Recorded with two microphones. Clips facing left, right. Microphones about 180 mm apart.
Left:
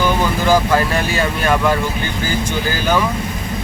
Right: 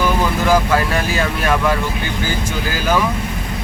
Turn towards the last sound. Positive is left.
turn(degrees=0)  # may be behind; listen again after turning